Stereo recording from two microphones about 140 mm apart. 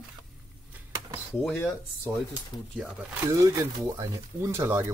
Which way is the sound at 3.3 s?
25° right (ahead or behind).